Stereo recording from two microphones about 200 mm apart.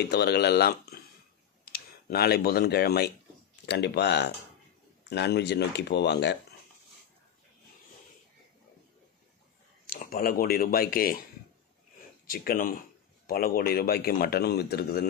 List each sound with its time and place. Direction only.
0.1 s speech: 55° left (ahead or behind)
9.8 s speech: 45° left (ahead or behind)
12.3 s a man's voice: 45° left (ahead or behind)